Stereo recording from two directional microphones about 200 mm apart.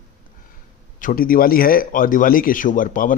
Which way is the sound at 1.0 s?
45° left (ahead or behind).